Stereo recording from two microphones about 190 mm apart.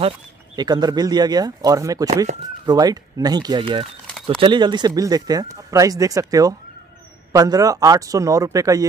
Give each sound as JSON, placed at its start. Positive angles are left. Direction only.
{"t": 0.6, "sound": "speech", "side_deg": -20}